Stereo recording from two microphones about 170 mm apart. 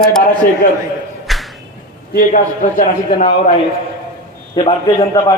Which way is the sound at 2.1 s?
50° left (ahead or behind).